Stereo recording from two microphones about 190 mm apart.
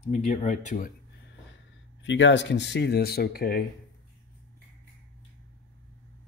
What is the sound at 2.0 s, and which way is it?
Speech, 70° left (ahead or behind).